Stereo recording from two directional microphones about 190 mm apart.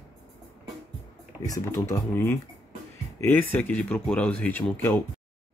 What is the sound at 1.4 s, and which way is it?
Speech, 15° left (ahead or behind).